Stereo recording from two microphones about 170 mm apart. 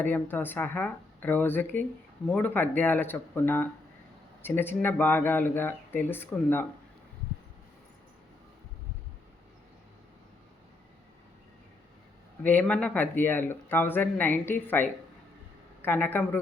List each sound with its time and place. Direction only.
0.0 s speech: 10° left (ahead or behind)
12.4 s speech: 10° left (ahead or behind)